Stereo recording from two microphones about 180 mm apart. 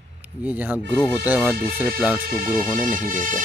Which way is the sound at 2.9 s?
45° right (ahead or behind).